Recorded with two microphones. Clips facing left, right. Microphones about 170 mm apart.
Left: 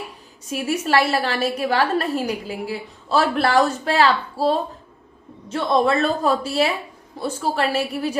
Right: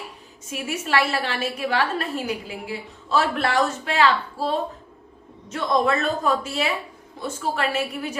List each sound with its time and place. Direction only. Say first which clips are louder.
0.5 s a woman's voice: left 4 dB; 40° left (ahead or behind)